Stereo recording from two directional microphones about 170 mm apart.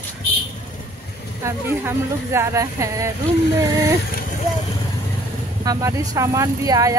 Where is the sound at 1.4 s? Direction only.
15° right (ahead or behind).